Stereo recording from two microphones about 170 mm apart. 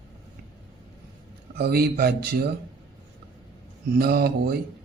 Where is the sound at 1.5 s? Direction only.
65° right (ahead or behind).